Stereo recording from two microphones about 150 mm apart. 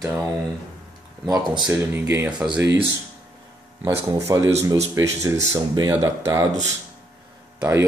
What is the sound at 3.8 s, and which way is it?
Speech, 20° right (ahead or behind).